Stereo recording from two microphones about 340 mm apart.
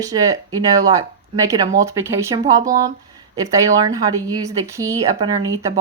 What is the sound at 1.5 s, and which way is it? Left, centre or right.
Speech, centre.